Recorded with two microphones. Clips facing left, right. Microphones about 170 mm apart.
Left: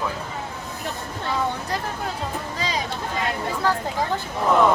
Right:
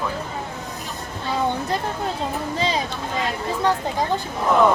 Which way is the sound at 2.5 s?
25° right (ahead or behind).